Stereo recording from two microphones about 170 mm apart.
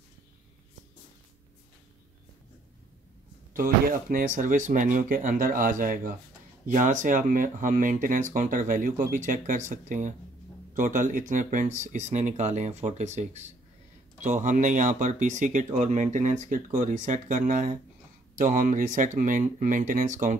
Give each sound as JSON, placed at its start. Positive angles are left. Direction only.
{"t": 3.5, "sound": "speech", "side_deg": -55}